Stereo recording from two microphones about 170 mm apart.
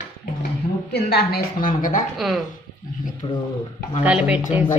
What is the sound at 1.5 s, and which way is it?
Speech, 55° left (ahead or behind).